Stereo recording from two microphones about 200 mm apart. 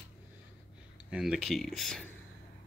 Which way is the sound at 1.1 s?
Centre (ahead or behind).